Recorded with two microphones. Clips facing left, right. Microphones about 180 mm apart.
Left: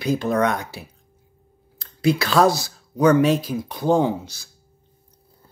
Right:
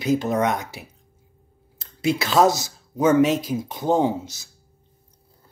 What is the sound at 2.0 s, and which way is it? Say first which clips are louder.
Speech: left 1 dB; 20° right (ahead or behind).